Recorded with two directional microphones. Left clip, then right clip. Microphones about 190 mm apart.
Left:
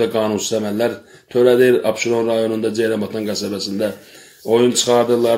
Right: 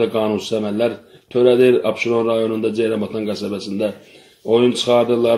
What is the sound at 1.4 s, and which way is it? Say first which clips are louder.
Speech: even; 10° left (ahead or behind).